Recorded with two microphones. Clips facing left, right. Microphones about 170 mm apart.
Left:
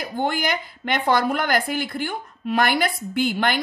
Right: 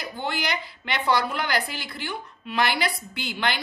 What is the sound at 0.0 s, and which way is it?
Speech, 50° left (ahead or behind).